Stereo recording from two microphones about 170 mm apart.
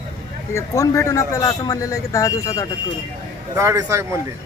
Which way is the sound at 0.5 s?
20° left (ahead or behind).